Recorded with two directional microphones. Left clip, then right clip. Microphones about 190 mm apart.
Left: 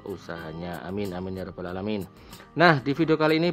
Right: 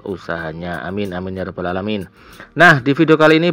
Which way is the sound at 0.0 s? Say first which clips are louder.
Right 12 dB; 10° right (ahead or behind).